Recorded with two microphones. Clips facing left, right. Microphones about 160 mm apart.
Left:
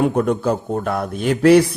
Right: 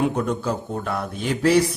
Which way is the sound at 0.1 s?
55° left (ahead or behind).